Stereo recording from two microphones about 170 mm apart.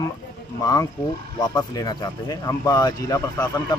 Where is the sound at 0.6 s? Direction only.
20° left (ahead or behind).